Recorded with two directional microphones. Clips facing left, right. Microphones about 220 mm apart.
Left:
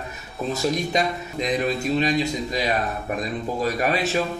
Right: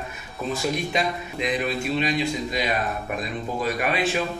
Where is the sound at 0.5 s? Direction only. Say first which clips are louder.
Left 2 dB; 40° left (ahead or behind).